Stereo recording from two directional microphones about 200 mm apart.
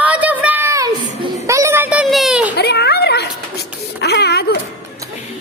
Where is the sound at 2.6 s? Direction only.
55° left (ahead or behind).